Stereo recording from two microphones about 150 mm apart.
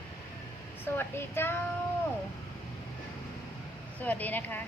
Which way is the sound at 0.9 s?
15° left (ahead or behind).